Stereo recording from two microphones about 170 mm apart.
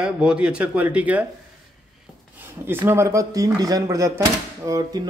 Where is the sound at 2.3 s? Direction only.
15° right (ahead or behind).